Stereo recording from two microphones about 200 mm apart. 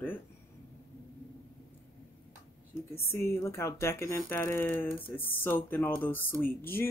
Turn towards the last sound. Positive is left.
turn(degrees=10)  # may be behind; listen again after turning